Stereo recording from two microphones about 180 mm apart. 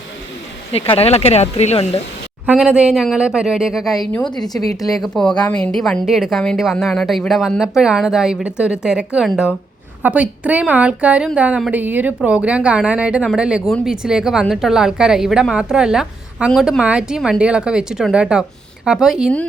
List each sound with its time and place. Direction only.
0.7 s speech: 30° left (ahead or behind)
2.5 s speech: 5° right (ahead or behind)